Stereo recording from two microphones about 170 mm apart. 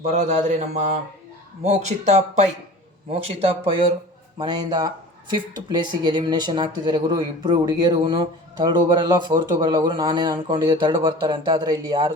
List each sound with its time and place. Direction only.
0.0 s speech: 45° right (ahead or behind)
3.4 s speech: 30° right (ahead or behind)